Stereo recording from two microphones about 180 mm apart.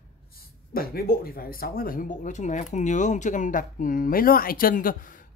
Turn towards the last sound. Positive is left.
turn(degrees=50)  # may be behind; listen again after turning